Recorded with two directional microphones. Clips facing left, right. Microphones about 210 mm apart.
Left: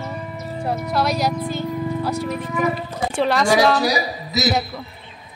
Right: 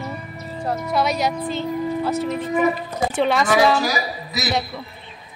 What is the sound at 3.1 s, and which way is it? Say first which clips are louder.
Speech: even; centre (ahead or behind).